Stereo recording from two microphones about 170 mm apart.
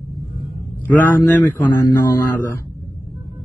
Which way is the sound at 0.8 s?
10° left (ahead or behind).